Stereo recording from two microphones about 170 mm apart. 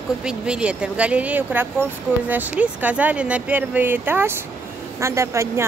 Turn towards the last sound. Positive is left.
turn(degrees=-15)  # may be behind; listen again after turning